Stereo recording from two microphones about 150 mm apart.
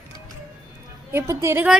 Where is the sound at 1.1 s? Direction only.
15° right (ahead or behind).